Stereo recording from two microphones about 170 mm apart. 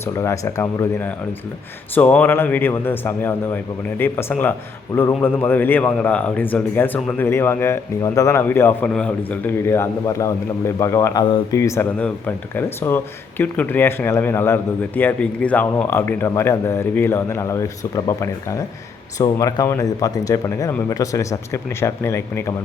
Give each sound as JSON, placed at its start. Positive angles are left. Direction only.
{"t": 0.0, "sound": "speech", "side_deg": 15}